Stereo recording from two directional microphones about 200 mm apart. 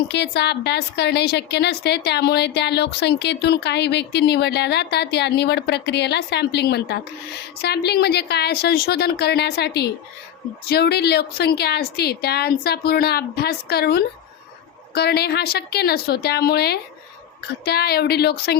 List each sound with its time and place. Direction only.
0.1 s a woman's voice: 60° left (ahead or behind)